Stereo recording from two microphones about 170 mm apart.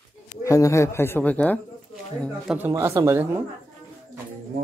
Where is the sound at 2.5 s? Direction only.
10° right (ahead or behind).